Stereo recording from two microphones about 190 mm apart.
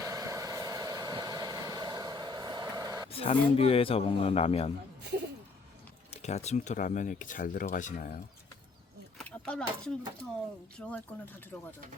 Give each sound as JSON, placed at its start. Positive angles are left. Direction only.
{"t": 0.0, "sound": "vehicle", "side_deg": -15}
{"t": 3.1, "sound": "speech", "side_deg": 30}
{"t": 6.1, "sound": "speech", "side_deg": 35}
{"t": 9.1, "sound": "a sound", "side_deg": 5}
{"t": 10.8, "sound": "speech", "side_deg": 5}